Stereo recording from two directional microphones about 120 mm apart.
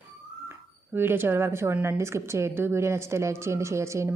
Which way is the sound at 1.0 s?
20° right (ahead or behind).